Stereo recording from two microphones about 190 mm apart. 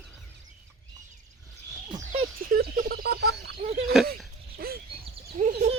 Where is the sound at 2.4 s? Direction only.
50° right (ahead or behind).